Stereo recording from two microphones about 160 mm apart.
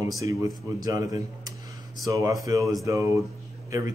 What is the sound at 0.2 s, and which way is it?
Speech, 20° right (ahead or behind).